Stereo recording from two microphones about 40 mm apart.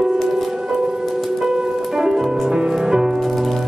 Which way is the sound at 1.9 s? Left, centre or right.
Centre.